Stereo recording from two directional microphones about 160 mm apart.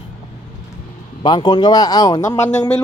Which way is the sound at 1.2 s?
30° left (ahead or behind).